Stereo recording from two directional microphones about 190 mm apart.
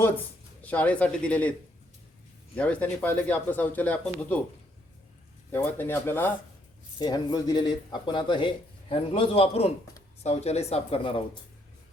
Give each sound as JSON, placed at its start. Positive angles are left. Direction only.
{"t": 0.6, "sound": "speech", "side_deg": 10}
{"t": 2.6, "sound": "speech", "side_deg": 5}
{"t": 5.5, "sound": "speech", "side_deg": 10}